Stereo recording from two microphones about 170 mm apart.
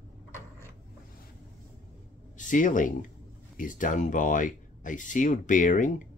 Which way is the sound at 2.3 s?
50° left (ahead or behind).